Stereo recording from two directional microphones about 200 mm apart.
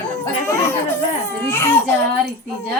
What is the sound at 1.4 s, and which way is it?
Speech, 10° left (ahead or behind).